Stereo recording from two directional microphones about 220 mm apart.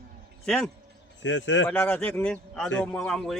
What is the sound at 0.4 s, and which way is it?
Speech, 5° left (ahead or behind).